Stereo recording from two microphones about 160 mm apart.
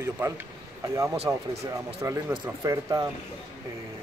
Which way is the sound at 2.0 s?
10° right (ahead or behind).